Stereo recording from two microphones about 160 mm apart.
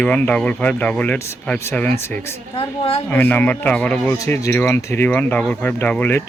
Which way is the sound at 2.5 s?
35° left (ahead or behind).